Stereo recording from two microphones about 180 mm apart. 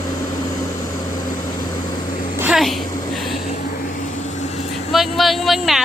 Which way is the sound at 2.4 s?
5° right (ahead or behind).